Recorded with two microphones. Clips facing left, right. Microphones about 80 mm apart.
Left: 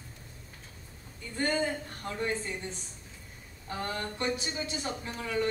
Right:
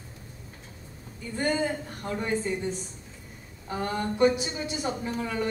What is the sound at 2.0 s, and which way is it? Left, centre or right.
Speech, centre.